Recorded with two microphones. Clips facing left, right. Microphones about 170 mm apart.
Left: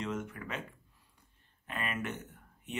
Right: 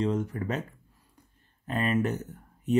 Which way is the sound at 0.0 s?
35° right (ahead or behind).